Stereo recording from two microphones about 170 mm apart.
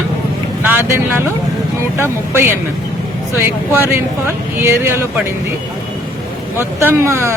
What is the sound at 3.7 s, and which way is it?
Speech, 15° right (ahead or behind).